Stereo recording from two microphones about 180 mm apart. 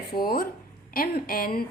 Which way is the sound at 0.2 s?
55° left (ahead or behind).